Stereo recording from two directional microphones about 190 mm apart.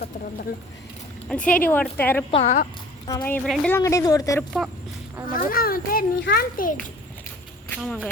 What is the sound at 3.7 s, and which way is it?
Speech, 15° left (ahead or behind).